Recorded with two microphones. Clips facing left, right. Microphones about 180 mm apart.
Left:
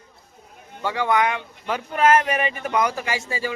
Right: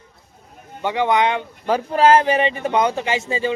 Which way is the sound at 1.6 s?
35° right (ahead or behind).